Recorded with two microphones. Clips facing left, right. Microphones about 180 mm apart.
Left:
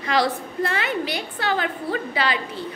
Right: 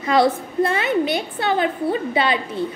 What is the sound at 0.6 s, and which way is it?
A woman's voice, 25° right (ahead or behind).